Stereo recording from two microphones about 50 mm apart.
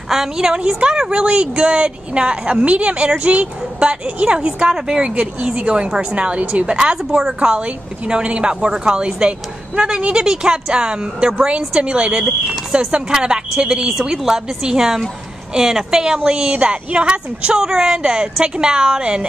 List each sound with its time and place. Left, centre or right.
0.1 s a woman's voice: centre
7.3 s a woman's voice: right